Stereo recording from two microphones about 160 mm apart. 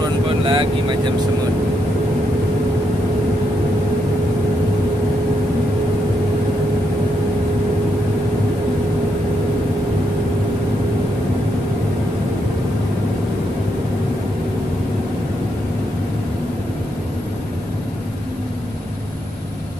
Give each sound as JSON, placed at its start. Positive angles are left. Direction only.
{"t": 0.5, "sound": "speech", "side_deg": -30}